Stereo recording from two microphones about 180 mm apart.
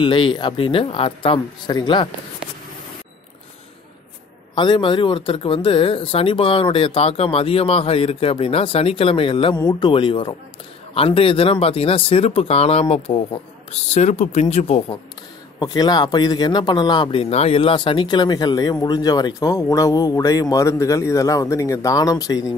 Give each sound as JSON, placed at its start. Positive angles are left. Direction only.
{"t": 0.0, "sound": "speech", "side_deg": 30}
{"t": 4.6, "sound": "speech", "side_deg": 25}
{"t": 15.6, "sound": "speech", "side_deg": 25}